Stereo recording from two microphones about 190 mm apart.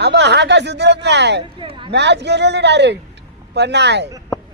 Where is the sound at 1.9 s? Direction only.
65° right (ahead or behind).